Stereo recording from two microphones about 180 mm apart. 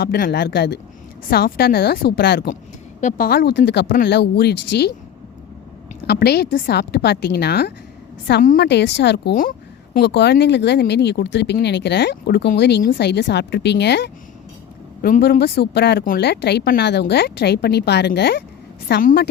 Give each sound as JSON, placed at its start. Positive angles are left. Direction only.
{"t": 0.0, "sound": "speech", "side_deg": 65}
{"t": 3.0, "sound": "speech", "side_deg": 45}
{"t": 3.2, "sound": "a woman's voice", "side_deg": 60}
{"t": 6.1, "sound": "a woman's voice", "side_deg": 65}
{"t": 15.0, "sound": "speech", "side_deg": 55}